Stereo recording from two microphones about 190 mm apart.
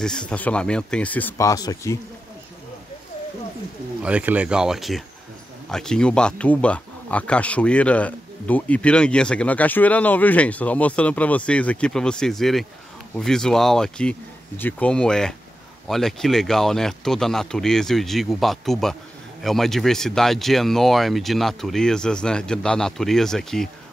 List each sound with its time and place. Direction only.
0.0 s speech: 5° left (ahead or behind)
4.0 s speech: 10° right (ahead or behind)